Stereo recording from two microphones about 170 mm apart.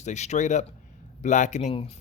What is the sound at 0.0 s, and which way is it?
Speech, 45° left (ahead or behind).